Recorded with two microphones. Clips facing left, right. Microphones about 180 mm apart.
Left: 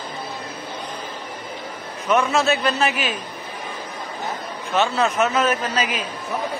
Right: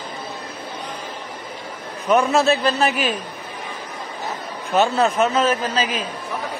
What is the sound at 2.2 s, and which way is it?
Speech, 35° right (ahead or behind).